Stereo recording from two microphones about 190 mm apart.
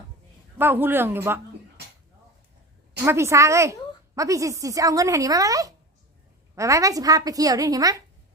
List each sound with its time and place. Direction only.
0.6 s a woman's voice: 10° right (ahead or behind)
3.0 s a woman's voice: 15° right (ahead or behind)